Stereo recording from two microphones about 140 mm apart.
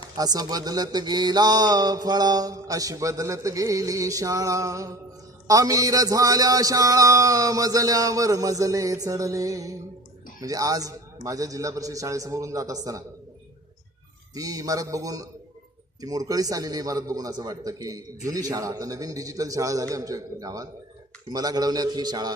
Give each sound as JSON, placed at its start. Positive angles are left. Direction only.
{"t": 0.2, "sound": "speech", "side_deg": -30}
{"t": 14.3, "sound": "speech", "side_deg": -25}